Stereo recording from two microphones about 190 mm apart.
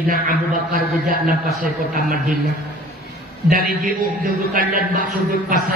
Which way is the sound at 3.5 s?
50° right (ahead or behind).